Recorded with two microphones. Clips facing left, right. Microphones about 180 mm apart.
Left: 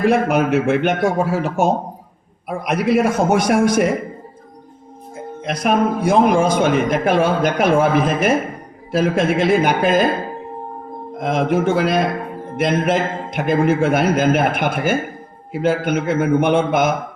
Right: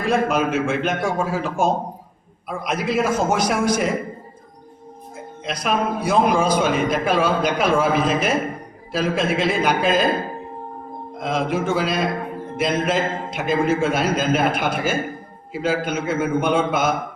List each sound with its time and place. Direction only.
0.1 s a man's voice: 65° left (ahead or behind)
5.4 s a man's voice: 55° left (ahead or behind)
11.2 s a man's voice: 55° left (ahead or behind)